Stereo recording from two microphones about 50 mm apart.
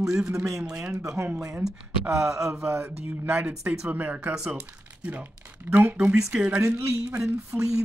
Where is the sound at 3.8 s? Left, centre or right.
Right.